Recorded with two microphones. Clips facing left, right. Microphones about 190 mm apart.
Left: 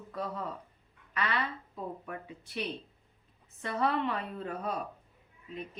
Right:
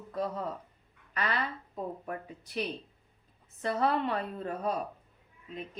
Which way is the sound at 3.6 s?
35° right (ahead or behind).